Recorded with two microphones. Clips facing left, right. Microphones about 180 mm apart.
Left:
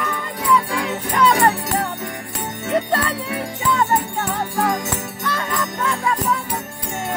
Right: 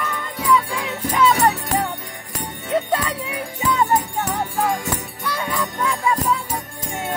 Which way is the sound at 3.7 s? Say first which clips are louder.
Right 1 dB; 20° right (ahead or behind).